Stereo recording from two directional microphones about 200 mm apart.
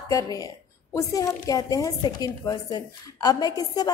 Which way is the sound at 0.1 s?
15° left (ahead or behind).